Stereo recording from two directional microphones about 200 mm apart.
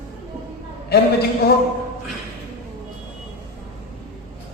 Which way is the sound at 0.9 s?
55° left (ahead or behind).